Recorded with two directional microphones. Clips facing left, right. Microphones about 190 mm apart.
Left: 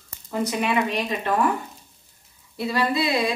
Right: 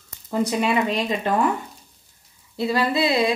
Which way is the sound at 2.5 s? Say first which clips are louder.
Right 2 dB; 25° right (ahead or behind).